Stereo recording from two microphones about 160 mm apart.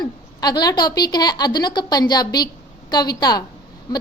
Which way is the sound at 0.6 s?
25° left (ahead or behind).